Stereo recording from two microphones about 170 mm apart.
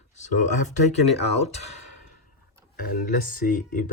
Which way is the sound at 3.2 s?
55° left (ahead or behind).